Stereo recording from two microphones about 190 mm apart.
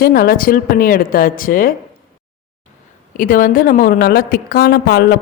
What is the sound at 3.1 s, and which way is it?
Speech, 45° left (ahead or behind).